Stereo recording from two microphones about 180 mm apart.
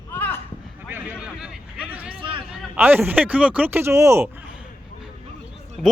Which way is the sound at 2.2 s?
30° right (ahead or behind).